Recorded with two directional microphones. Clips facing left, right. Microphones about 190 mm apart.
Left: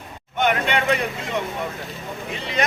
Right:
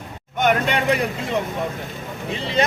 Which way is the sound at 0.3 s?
40° right (ahead or behind).